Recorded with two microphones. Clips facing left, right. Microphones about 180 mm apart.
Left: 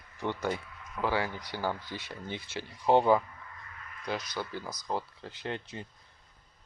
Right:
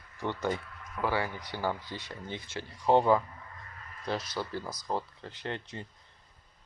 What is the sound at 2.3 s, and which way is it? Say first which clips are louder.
Speech: left 1 dB; 15° left (ahead or behind).